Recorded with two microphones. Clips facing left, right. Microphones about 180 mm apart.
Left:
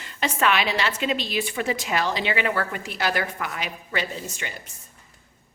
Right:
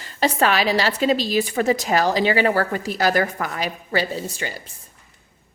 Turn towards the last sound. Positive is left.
turn(degrees=-35)  # may be behind; listen again after turning